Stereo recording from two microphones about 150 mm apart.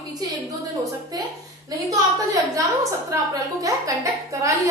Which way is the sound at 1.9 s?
20° right (ahead or behind).